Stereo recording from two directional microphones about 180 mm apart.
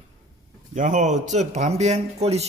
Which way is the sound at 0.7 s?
45° right (ahead or behind).